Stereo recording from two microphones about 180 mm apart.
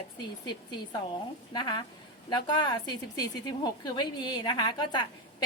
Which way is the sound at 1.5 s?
25° left (ahead or behind).